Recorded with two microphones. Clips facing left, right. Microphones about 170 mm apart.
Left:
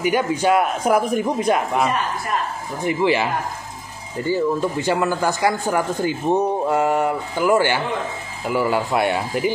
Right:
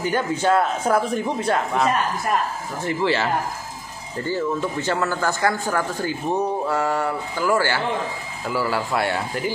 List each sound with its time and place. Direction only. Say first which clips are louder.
0.0 s speech: left 3 dB; 15° left (ahead or behind)